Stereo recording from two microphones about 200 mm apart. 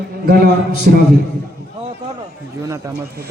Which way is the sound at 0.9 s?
50° right (ahead or behind).